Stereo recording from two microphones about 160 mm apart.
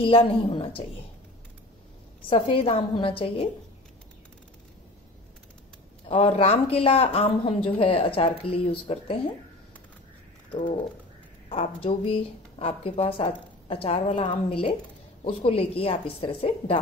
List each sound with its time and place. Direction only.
0.0 s speech: 35° left (ahead or behind)
2.2 s speech: 35° left (ahead or behind)
6.0 s speech: 40° left (ahead or behind)
11.4 s speech: 40° left (ahead or behind)